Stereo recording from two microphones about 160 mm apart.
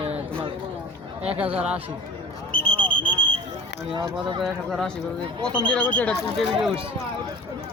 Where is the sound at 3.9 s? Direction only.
30° right (ahead or behind).